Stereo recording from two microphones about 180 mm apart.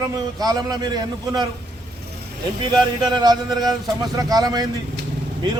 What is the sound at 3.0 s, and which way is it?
A man's voice, 25° right (ahead or behind).